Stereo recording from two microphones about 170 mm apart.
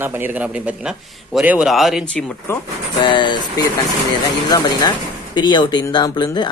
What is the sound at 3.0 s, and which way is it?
Speech, 30° left (ahead or behind).